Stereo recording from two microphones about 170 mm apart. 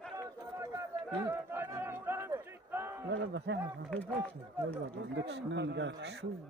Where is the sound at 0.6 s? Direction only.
15° right (ahead or behind).